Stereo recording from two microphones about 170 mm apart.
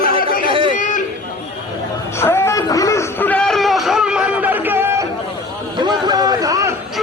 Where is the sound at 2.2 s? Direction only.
15° left (ahead or behind); by 5.0 s 15° right (ahead or behind).